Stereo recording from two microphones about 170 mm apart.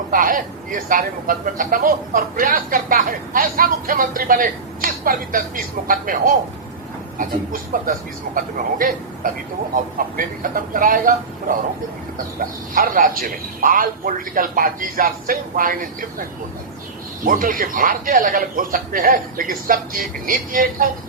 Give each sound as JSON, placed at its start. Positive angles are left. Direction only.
{"t": 0.1, "sound": "a man's voice", "side_deg": -55}
{"t": 17.2, "sound": "speech", "side_deg": -55}